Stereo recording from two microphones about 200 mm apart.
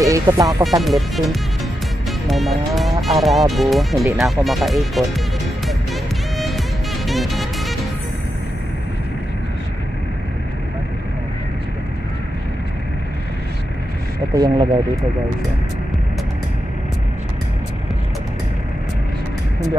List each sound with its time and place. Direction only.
0.0 s speech: 15° right (ahead or behind)
0.7 s speech: centre (ahead or behind)
6.3 s music: centre (ahead or behind)
14.3 s speech: 20° right (ahead or behind)